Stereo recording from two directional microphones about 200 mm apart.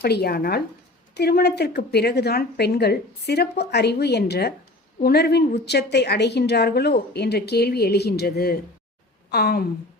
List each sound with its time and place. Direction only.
0.0 s a woman's voice: 55° left (ahead or behind)